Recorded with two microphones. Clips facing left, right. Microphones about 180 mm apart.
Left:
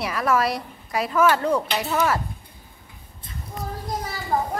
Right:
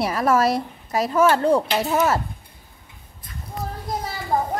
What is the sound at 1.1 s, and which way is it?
A woman's voice, 30° right (ahead or behind).